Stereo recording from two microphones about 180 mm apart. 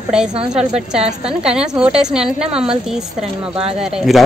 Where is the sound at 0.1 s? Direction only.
5° right (ahead or behind).